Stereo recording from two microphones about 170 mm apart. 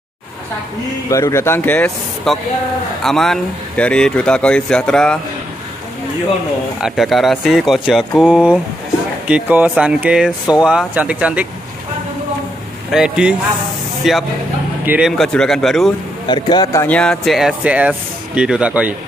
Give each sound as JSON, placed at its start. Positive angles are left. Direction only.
{"t": 1.1, "sound": "speech", "side_deg": 15}
{"t": 6.8, "sound": "speech", "side_deg": 0}
{"t": 12.9, "sound": "speech", "side_deg": -5}
{"t": 16.3, "sound": "speech", "side_deg": 25}
{"t": 16.8, "sound": "speech", "side_deg": 5}